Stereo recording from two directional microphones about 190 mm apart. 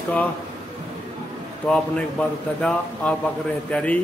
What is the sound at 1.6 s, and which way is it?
Speech, 5° left (ahead or behind).